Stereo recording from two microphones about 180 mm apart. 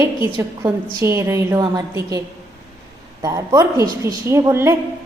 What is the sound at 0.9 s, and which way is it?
A woman's voice, 15° right (ahead or behind).